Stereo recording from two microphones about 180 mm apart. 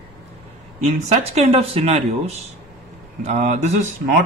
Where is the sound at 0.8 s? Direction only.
40° right (ahead or behind).